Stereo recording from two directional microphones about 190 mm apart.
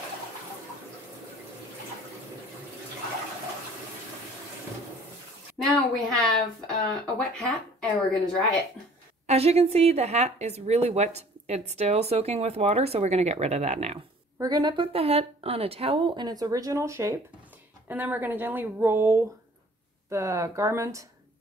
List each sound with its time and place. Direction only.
5.7 s speech: centre (ahead or behind)
9.3 s speech: 35° right (ahead or behind)
14.4 s a woman's voice: 20° right (ahead or behind)